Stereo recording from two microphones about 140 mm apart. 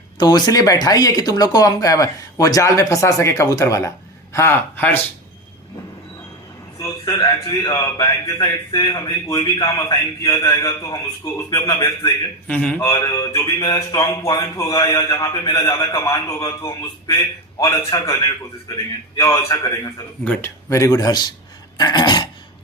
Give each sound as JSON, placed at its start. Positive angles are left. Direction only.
{"t": 0.2, "sound": "speech", "side_deg": 30}
{"t": 6.7, "sound": "speech", "side_deg": 20}
{"t": 10.4, "sound": "a man's voice", "side_deg": 35}
{"t": 10.8, "sound": "speech", "side_deg": 20}
{"t": 12.5, "sound": "speech", "side_deg": 10}
{"t": 12.9, "sound": "speech", "side_deg": 25}
{"t": 14.3, "sound": "speech", "side_deg": 30}